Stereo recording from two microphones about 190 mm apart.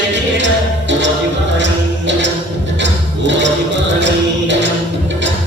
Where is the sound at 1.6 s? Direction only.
70° right (ahead or behind).